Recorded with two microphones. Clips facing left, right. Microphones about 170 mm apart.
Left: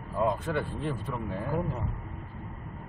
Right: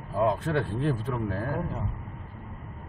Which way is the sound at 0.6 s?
85° right.